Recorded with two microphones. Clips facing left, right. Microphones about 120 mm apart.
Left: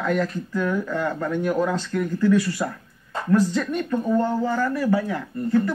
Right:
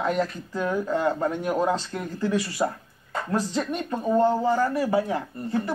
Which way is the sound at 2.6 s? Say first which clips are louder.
Right 2 dB; 30° right (ahead or behind).